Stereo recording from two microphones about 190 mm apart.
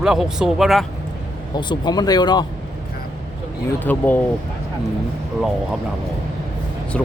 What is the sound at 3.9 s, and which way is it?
Speech, 10° left (ahead or behind).